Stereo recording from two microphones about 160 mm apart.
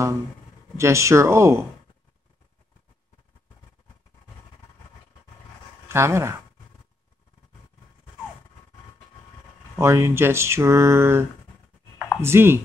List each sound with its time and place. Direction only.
0.7 s speech: 20° right (ahead or behind)
5.9 s speech: 15° right (ahead or behind)
9.8 s speech: 20° right (ahead or behind)